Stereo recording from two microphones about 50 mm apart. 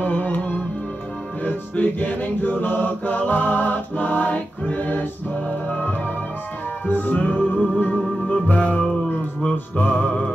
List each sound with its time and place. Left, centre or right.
0.0 s music: left
7.3 s music: left